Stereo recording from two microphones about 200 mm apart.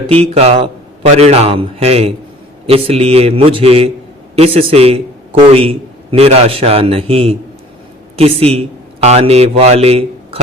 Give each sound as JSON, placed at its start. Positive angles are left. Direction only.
{"t": 0.1, "sound": "a man's voice", "side_deg": -30}